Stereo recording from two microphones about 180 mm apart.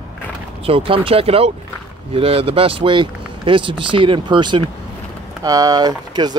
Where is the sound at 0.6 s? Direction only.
30° right (ahead or behind).